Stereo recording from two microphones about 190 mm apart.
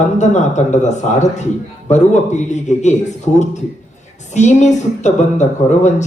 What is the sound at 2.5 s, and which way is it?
Speech, 40° left (ahead or behind).